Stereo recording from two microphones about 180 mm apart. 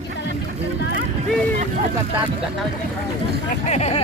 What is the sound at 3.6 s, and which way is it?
Speech, 40° left (ahead or behind).